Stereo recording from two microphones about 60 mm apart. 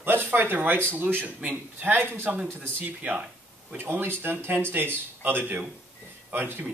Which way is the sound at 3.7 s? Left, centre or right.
Right.